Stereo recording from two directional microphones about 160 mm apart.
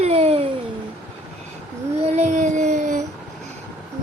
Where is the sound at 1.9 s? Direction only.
40° right (ahead or behind).